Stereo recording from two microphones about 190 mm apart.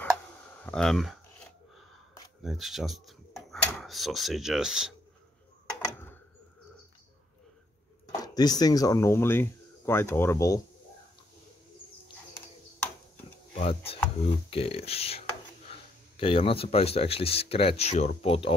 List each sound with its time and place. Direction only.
0.7 s speech: 5° left (ahead or behind)
2.4 s speech: centre (ahead or behind)
5.9 s a sound: 10° left (ahead or behind)
8.1 s speech: 20° left (ahead or behind)
13.6 s speech: 30° left (ahead or behind)